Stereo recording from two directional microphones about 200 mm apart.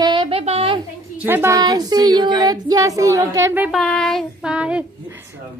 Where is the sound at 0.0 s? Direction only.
25° right (ahead or behind).